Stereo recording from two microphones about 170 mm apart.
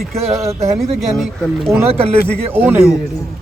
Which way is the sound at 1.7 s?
Centre (ahead or behind).